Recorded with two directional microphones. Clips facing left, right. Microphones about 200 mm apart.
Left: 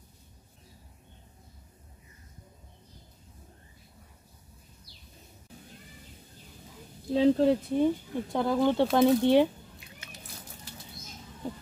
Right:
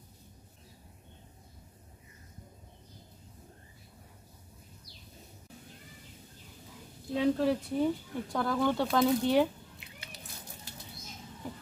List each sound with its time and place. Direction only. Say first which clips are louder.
7.2 s speech: left 5 dB; 25° left (ahead or behind)